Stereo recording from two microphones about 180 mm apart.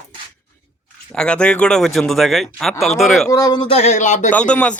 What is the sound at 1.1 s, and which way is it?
A man's voice, 5° left (ahead or behind).